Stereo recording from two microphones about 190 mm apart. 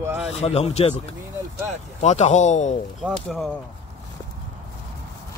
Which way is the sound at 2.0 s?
35° left (ahead or behind).